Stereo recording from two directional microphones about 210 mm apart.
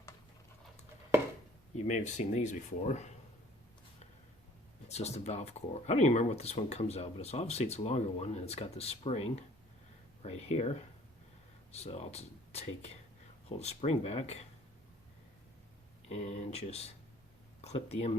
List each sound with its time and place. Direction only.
1.7 s speech: 35° left (ahead or behind)
4.9 s speech: 30° left (ahead or behind)
16.0 s speech: 30° left (ahead or behind)